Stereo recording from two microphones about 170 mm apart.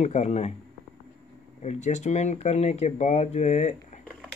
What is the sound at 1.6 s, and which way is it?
Speech, 45° left (ahead or behind).